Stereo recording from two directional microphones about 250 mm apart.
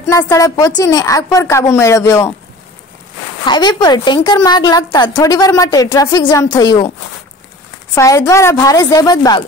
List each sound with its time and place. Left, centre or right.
0.1 s a woman's voice: centre
3.4 s a woman's voice: centre
7.9 s a woman's voice: centre